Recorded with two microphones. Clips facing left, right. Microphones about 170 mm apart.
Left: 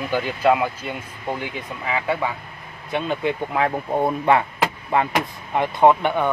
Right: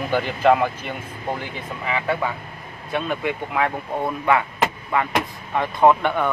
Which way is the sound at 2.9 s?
25° left (ahead or behind).